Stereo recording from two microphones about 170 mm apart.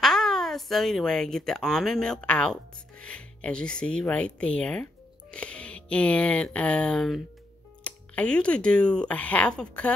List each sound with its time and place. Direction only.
0.0 s speech: centre (ahead or behind)